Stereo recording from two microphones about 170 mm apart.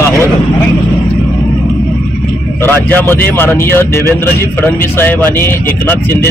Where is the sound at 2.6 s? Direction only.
10° left (ahead or behind).